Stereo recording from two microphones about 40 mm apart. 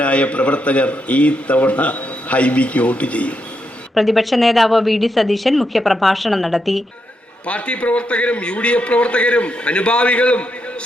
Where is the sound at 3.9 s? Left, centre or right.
Centre.